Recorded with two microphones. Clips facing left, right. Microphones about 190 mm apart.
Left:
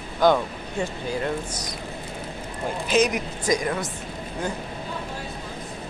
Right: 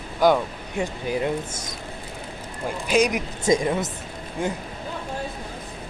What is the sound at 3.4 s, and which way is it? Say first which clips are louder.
Speech: right 4 dB; 25° right (ahead or behind).